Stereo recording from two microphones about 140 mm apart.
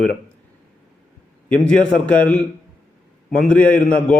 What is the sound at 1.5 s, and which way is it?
A man's voice, 5° left (ahead or behind).